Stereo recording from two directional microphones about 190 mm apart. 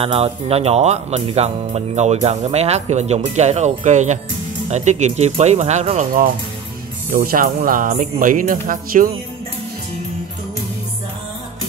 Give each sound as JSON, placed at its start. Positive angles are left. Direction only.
{"t": 0.0, "sound": "speech", "side_deg": -30}